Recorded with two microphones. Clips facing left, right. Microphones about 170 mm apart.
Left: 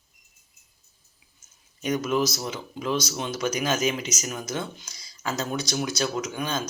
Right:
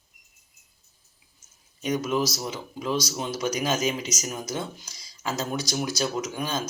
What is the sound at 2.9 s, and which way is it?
Speech, 35° right (ahead or behind).